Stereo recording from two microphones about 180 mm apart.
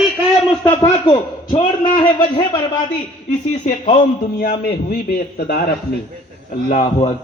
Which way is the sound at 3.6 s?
40° left (ahead or behind).